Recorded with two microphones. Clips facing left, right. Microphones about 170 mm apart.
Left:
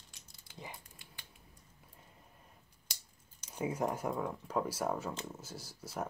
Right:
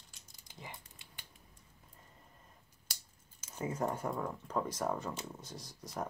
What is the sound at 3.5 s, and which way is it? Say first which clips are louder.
Speech: left 1 dB; 10° left (ahead or behind).